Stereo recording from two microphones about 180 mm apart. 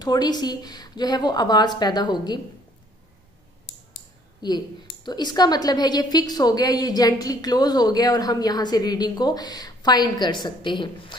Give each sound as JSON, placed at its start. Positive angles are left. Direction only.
{"t": 0.0, "sound": "a woman's voice", "side_deg": 20}
{"t": 4.4, "sound": "a woman's voice", "side_deg": 25}